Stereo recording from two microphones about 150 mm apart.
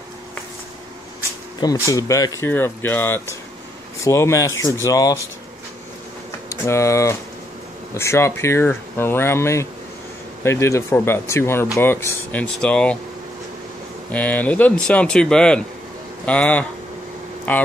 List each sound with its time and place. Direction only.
1.6 s speech: 25° left (ahead or behind)
6.5 s speech: 20° left (ahead or behind)
14.1 s speech: 10° left (ahead or behind)